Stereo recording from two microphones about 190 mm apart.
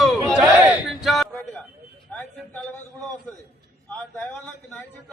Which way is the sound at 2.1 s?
5° left (ahead or behind).